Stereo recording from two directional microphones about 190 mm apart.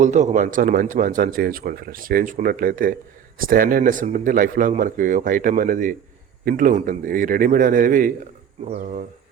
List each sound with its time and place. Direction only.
0.0 s a man's voice: 40° right (ahead or behind)